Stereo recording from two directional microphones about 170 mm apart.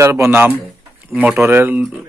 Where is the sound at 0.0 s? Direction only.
15° right (ahead or behind).